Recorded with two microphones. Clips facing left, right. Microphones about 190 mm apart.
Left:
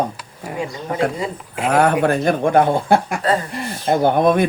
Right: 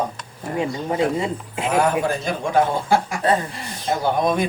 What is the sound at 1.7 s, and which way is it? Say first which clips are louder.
Speech: left 4 dB; 65° left (ahead or behind).